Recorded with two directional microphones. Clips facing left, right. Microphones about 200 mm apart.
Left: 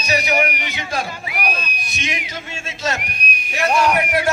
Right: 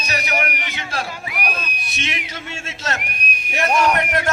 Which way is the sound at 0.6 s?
15° left (ahead or behind).